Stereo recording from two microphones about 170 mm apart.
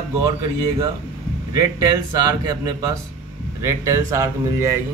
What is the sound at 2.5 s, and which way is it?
Speech, 20° right (ahead or behind).